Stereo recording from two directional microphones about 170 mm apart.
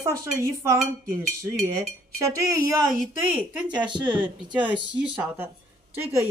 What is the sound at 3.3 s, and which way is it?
Speech, 5° right (ahead or behind).